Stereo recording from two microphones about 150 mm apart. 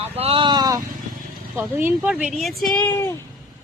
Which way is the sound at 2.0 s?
5° right (ahead or behind).